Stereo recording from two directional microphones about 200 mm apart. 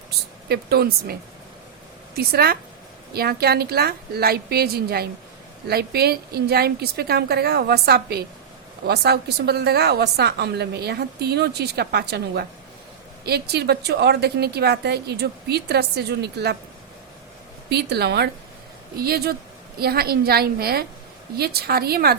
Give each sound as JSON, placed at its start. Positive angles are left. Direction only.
{"t": 0.4, "sound": "a woman's voice", "side_deg": -50}
{"t": 2.1, "sound": "a woman's voice", "side_deg": -50}
{"t": 17.7, "sound": "a woman's voice", "side_deg": -55}